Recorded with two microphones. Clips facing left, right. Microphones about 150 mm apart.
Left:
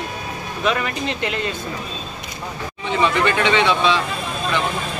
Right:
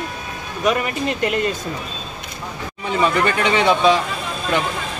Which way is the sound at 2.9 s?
40° right (ahead or behind).